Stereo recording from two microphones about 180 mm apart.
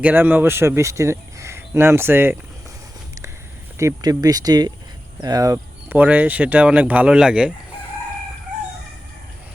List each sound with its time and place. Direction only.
0.0 s speech: 10° right (ahead or behind)
3.8 s speech: 15° right (ahead or behind)